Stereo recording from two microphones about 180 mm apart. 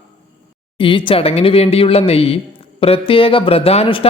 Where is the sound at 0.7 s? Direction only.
30° left (ahead or behind).